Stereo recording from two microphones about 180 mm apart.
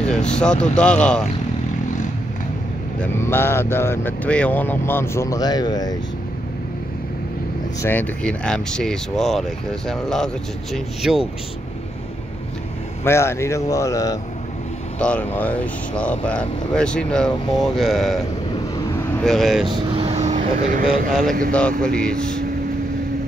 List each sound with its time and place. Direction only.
0.0 s speech: 5° left (ahead or behind)
3.0 s speech: 10° left (ahead or behind)
7.8 s speech: 10° left (ahead or behind)
13.0 s speech: 15° left (ahead or behind)
15.0 s speech: 5° left (ahead or behind)
19.7 s vehicle: 30° right (ahead or behind); by 20.8 s 45° right (ahead or behind)
21.1 s speech: centre (ahead or behind)